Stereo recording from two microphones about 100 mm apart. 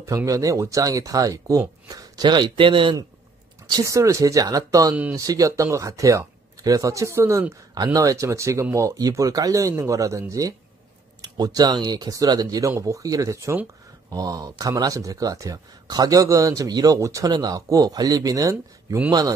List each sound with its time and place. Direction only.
0.0 s speech: 30° right (ahead or behind); by 3.0 s 55° right (ahead or behind)
3.6 s speech: 35° right (ahead or behind)
11.1 s speech: 45° right (ahead or behind)